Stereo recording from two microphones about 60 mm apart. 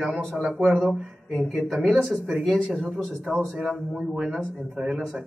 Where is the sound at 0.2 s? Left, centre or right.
Centre.